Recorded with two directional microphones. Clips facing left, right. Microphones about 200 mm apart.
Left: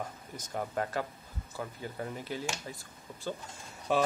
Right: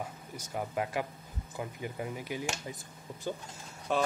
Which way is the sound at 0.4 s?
10° right (ahead or behind).